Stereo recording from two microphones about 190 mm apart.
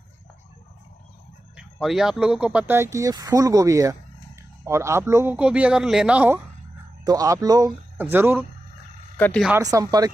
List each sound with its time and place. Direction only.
1.6 s speech: centre (ahead or behind)
9.1 s speech: 5° left (ahead or behind)
9.5 s speech: 15° right (ahead or behind)